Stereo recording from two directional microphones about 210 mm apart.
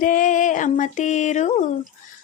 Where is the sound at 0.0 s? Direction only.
40° left (ahead or behind).